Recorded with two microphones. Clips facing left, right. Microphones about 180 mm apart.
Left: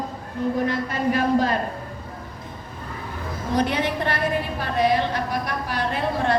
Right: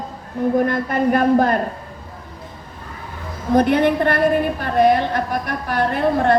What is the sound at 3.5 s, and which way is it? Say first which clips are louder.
A woman's voice: right 8 dB; 55° right (ahead or behind).